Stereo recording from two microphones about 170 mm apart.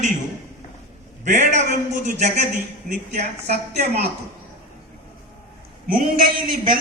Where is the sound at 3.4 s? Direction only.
40° right (ahead or behind).